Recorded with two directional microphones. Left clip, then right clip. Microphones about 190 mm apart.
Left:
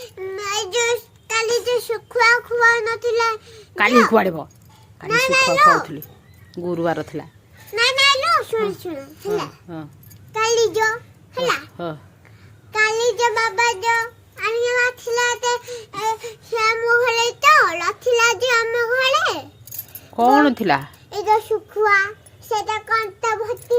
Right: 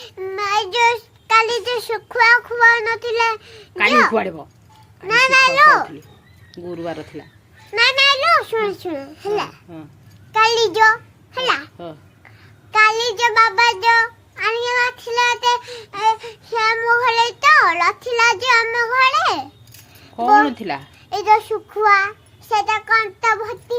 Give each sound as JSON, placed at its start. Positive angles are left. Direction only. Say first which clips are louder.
{"t": 0.0, "sound": "child singing", "louder": "right 4 dB", "side_deg": -20}
{"t": 4.1, "sound": "speech", "louder": "left 3 dB", "side_deg": 30}
{"t": 5.0, "sound": "child singing", "louder": "right 4 dB", "side_deg": -30}
{"t": 6.6, "sound": "speech", "louder": "left 6 dB", "side_deg": 30}
{"t": 7.7, "sound": "child singing", "louder": "right 2 dB", "side_deg": -20}
{"t": 10.3, "sound": "a child's voice", "louder": "right 3 dB", "side_deg": -30}
{"t": 12.7, "sound": "child singing", "louder": "right 3 dB", "side_deg": -30}
{"t": 20.1, "sound": "speech", "louder": "right 1 dB", "side_deg": 30}
{"t": 21.1, "sound": "child singing", "louder": "right 3 dB", "side_deg": -25}